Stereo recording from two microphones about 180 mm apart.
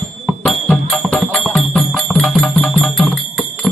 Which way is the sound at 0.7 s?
Centre (ahead or behind).